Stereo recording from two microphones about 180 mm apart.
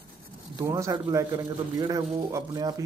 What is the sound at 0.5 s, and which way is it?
Speech, 15° right (ahead or behind).